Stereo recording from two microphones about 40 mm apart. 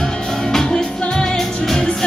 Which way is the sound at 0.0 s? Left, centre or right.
Centre.